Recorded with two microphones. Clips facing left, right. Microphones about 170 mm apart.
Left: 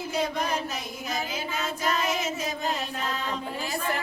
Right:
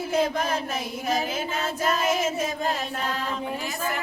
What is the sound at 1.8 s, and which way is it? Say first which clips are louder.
Child singing: right 4 dB; 50° right (ahead or behind).